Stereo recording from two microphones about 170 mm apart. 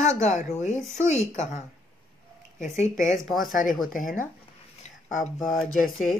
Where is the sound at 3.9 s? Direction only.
50° left (ahead or behind).